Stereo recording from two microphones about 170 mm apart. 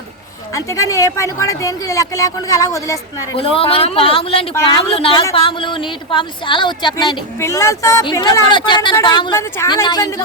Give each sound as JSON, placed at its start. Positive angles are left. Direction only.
{"t": 0.5, "sound": "speech", "side_deg": 20}
{"t": 3.3, "sound": "a man's voice", "side_deg": 30}
{"t": 7.3, "sound": "a woman's voice", "side_deg": 15}